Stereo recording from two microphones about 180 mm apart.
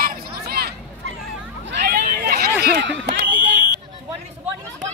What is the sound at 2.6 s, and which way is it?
Speech, 70° right (ahead or behind).